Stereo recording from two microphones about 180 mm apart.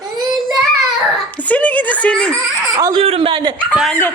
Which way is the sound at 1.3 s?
10° left (ahead or behind).